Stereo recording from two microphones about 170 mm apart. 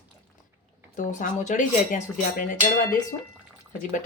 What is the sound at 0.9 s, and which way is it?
Speech, 50° left (ahead or behind).